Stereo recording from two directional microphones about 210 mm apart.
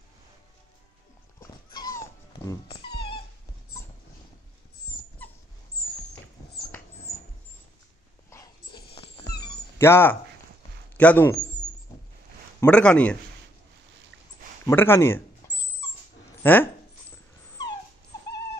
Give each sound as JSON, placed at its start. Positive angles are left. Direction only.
{"t": 1.4, "sound": "dog", "side_deg": 20}
{"t": 8.3, "sound": "dog", "side_deg": 20}
{"t": 8.9, "sound": "music", "side_deg": 25}
{"t": 9.3, "sound": "cat", "side_deg": 50}
{"t": 9.8, "sound": "speech", "side_deg": 10}
{"t": 12.5, "sound": "speech", "side_deg": 5}
{"t": 14.7, "sound": "speech", "side_deg": 10}